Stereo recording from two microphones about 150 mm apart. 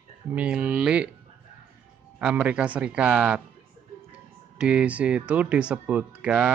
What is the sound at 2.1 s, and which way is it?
Speech, 10° right (ahead or behind).